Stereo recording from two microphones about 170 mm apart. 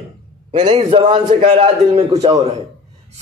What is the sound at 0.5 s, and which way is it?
A man's voice, 30° right (ahead or behind).